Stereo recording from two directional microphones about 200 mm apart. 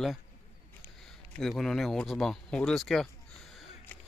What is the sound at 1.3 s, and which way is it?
Speech, centre (ahead or behind).